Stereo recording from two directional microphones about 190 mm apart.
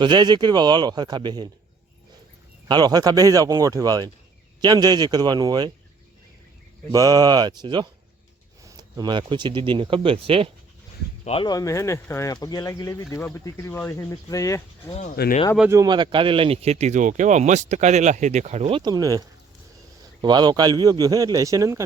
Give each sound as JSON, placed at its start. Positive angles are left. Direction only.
{"t": 0.0, "sound": "speech", "side_deg": -25}
{"t": 2.6, "sound": "speech", "side_deg": -20}
{"t": 6.9, "sound": "speech", "side_deg": -20}
{"t": 11.3, "sound": "speech", "side_deg": 25}
{"t": 15.1, "sound": "speech", "side_deg": 55}
{"t": 15.7, "sound": "speech", "side_deg": -20}
{"t": 18.8, "sound": "speech", "side_deg": -20}
{"t": 20.2, "sound": "speech", "side_deg": -20}